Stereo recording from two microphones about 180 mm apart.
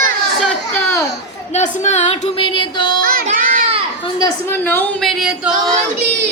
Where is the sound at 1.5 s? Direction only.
40° left (ahead or behind); by 3.0 s 25° left (ahead or behind).